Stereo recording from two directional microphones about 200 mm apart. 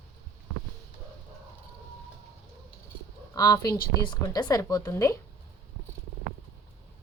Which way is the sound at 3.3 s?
20° left (ahead or behind).